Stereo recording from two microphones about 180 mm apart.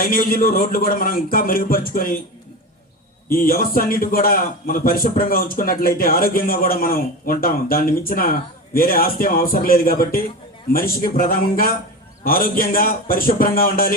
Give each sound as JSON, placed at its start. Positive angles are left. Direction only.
{"t": 0.0, "sound": "a man's voice", "side_deg": 55}
{"t": 3.2, "sound": "a man's voice", "side_deg": 55}